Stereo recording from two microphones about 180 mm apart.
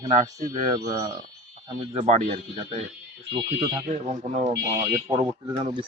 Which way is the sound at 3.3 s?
25° right (ahead or behind).